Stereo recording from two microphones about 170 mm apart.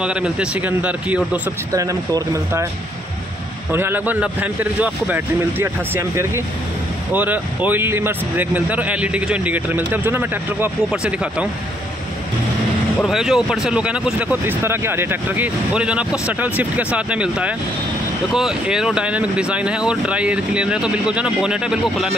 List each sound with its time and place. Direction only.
0.0 s speech: 5° right (ahead or behind)
1.7 s speech: 20° right (ahead or behind)
3.7 s speech: 10° right (ahead or behind)
13.0 s speech: centre (ahead or behind)